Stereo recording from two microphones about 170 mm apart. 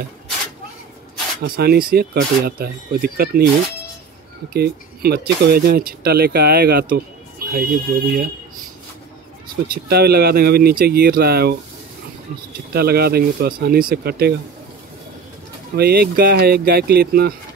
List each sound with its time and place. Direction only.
1.4 s speech: 65° right (ahead or behind)
4.6 s speech: 70° right (ahead or behind)
9.8 s speech: 70° right (ahead or behind)
12.7 s speech: 65° right (ahead or behind)
15.7 s speech: 70° right (ahead or behind)